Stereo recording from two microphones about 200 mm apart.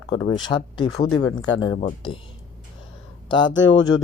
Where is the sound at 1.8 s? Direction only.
25° left (ahead or behind).